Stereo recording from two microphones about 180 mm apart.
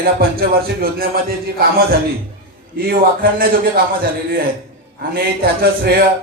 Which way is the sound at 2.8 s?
55° right (ahead or behind).